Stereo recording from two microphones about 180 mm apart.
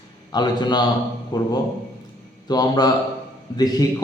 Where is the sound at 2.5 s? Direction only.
20° left (ahead or behind).